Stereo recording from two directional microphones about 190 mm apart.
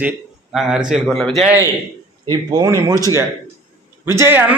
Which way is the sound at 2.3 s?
20° right (ahead or behind).